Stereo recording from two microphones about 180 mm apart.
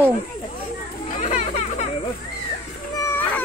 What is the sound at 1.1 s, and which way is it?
Children playing, 45° left (ahead or behind).